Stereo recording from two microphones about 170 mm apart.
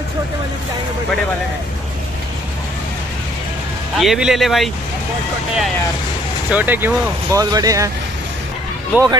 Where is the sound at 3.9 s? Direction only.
Centre (ahead or behind).